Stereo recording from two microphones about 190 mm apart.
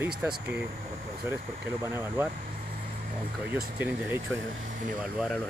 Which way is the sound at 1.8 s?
10° right (ahead or behind).